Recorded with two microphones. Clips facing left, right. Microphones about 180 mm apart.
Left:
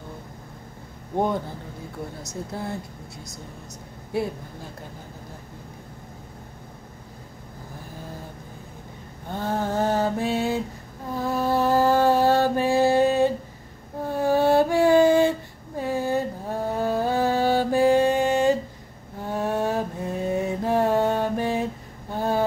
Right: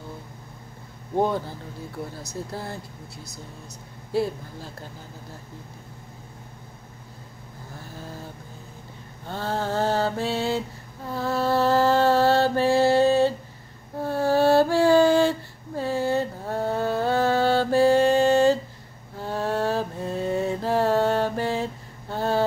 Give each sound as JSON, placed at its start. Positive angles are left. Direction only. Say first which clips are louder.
{"t": 9.3, "sound": "mantra", "louder": "left 1 dB", "side_deg": 15}
{"t": 14.0, "sound": "female singing", "louder": "even", "side_deg": 15}
{"t": 19.2, "sound": "mantra", "louder": "even", "side_deg": 15}
{"t": 22.1, "sound": "a sound", "louder": "even", "side_deg": 15}